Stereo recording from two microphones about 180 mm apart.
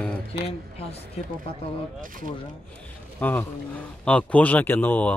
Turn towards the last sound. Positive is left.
turn(degrees=10)  # may be behind; listen again after turning